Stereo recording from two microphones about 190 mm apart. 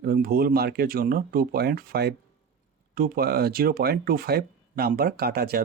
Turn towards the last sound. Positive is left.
turn(degrees=-55)  # may be behind; listen again after turning